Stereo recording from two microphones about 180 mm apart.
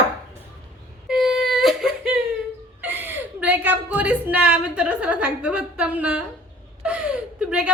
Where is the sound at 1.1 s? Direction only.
Centre (ahead or behind).